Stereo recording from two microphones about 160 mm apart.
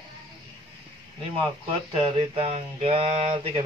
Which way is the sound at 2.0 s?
35° right (ahead or behind).